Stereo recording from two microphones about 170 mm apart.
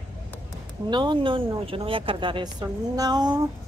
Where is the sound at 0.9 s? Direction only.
25° right (ahead or behind).